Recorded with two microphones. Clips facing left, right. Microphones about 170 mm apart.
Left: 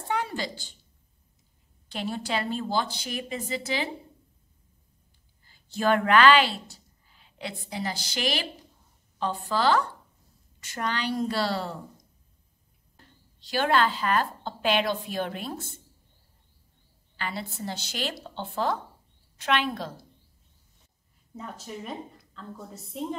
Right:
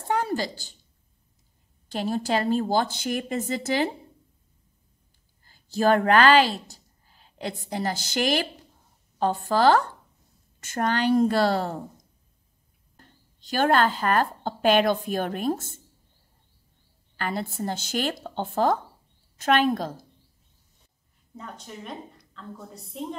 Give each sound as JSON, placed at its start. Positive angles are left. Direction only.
{"t": 0.1, "sound": "a sound", "side_deg": -45}
{"t": 1.9, "sound": "a woman's voice", "side_deg": -40}
{"t": 5.4, "sound": "a sound", "side_deg": -40}
{"t": 7.7, "sound": "a woman's voice", "side_deg": -45}
{"t": 13.5, "sound": "a woman's voice", "side_deg": -45}
{"t": 17.2, "sound": "a woman's voice", "side_deg": -50}
{"t": 21.4, "sound": "a woman's voice", "side_deg": 0}